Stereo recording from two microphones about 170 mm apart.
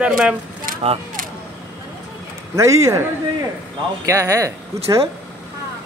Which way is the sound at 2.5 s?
20° right (ahead or behind).